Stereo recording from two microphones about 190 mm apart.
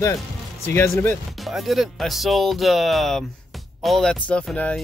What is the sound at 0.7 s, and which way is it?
Speech, 15° left (ahead or behind).